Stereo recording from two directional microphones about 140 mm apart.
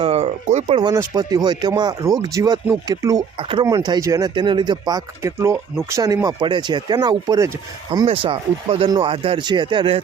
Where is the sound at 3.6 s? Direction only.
25° right (ahead or behind).